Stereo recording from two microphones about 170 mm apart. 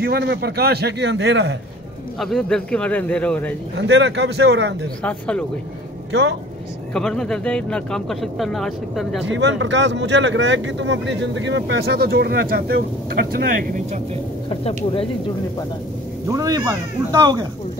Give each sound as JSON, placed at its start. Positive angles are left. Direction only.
{"t": 0.0, "sound": "a man's voice", "side_deg": -70}
{"t": 2.1, "sound": "speech", "side_deg": 5}
{"t": 3.7, "sound": "speech", "side_deg": -90}
{"t": 5.0, "sound": "speech", "side_deg": 10}
{"t": 6.9, "sound": "speech", "side_deg": 5}
{"t": 9.3, "sound": "speech", "side_deg": -90}
{"t": 14.5, "sound": "speech", "side_deg": 35}
{"t": 16.3, "sound": "speech", "side_deg": -20}